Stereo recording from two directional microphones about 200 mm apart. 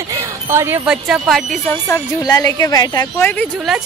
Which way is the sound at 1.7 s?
15° left (ahead or behind).